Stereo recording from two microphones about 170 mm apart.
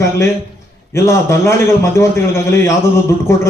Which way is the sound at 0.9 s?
15° left (ahead or behind).